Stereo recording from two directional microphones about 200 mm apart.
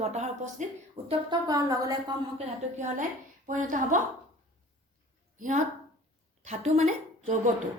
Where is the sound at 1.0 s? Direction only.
20° right (ahead or behind).